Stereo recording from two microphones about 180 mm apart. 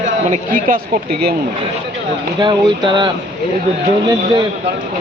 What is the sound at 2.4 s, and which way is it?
Speech, 25° right (ahead or behind).